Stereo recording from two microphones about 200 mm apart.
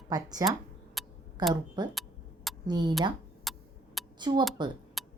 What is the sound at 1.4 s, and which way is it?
Speech, 20° right (ahead or behind).